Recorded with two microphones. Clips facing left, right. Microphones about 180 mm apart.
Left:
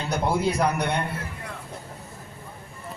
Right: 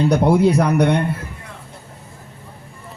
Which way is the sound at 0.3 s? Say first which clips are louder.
Right 5 dB; 60° right (ahead or behind).